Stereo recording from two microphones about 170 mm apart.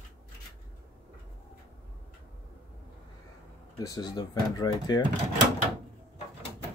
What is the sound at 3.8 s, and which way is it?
Speech, 25° left (ahead or behind).